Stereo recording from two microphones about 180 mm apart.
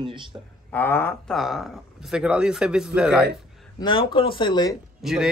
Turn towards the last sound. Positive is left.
turn(degrees=0)  # may be behind; listen again after turning